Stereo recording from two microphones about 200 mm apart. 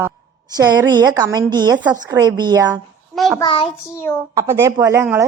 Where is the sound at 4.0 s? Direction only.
5° left (ahead or behind).